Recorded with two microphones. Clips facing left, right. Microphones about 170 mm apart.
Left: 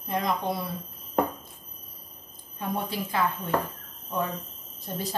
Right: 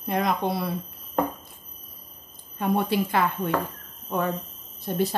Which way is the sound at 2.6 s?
70° right (ahead or behind).